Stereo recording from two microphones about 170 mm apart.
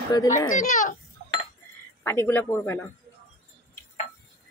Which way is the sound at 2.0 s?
15° left (ahead or behind).